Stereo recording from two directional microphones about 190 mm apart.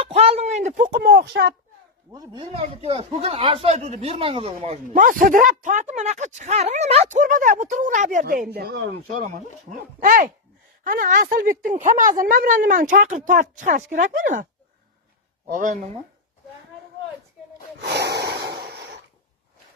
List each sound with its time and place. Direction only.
0.0 s a sound: 30° right (ahead or behind); by 1.5 s 60° right (ahead or behind)
2.1 s speech: 25° right (ahead or behind)
4.9 s speech: 45° right (ahead or behind)
10.0 s speech: 45° right (ahead or behind)
15.5 s speech: 40° right (ahead or behind)
17.7 s snort: 60° right (ahead or behind)
18.6 s a sound: 55° right (ahead or behind)